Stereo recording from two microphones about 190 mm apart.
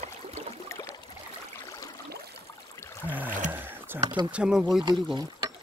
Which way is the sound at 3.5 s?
10° right (ahead or behind).